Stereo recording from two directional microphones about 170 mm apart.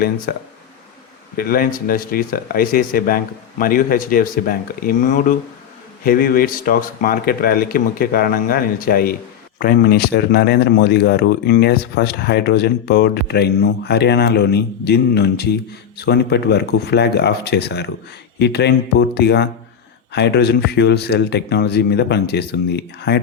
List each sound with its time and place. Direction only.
0.3 s speech: 60° left (ahead or behind); by 23.2 s 75° left (ahead or behind)